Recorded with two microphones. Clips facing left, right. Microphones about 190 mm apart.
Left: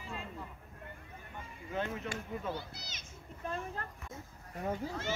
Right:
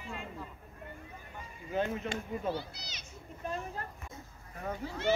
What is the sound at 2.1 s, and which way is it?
Speech, 25° right (ahead or behind).